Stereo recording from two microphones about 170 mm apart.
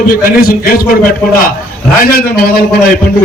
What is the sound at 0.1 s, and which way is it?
Speech, 60° left (ahead or behind).